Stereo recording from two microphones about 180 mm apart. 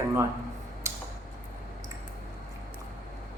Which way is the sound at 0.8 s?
15° right (ahead or behind).